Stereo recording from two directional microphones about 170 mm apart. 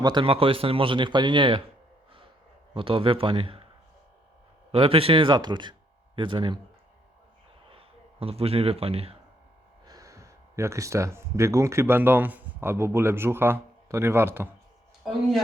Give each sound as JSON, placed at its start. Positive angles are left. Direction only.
{"t": 0.0, "sound": "speech", "side_deg": -30}
{"t": 2.7, "sound": "speech", "side_deg": -30}
{"t": 4.7, "sound": "speech", "side_deg": -35}
{"t": 7.7, "sound": "speech", "side_deg": -35}
{"t": 9.8, "sound": "speech", "side_deg": -20}